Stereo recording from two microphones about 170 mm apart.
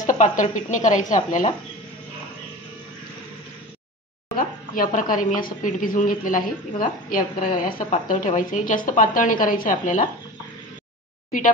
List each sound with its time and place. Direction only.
0.0 s a woman's voice: 50° left (ahead or behind)
4.4 s a woman's voice: 55° left (ahead or behind)